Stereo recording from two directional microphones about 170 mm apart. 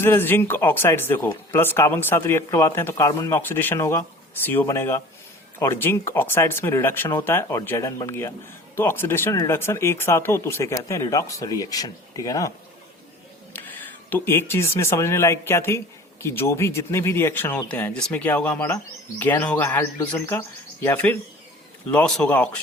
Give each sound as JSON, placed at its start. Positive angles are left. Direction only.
{"t": 0.0, "sound": "speech", "side_deg": 15}